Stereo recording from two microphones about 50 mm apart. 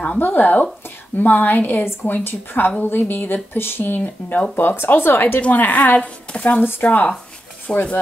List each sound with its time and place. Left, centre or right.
0.2 s a woman's voice: left
5.4 s a woman's voice: left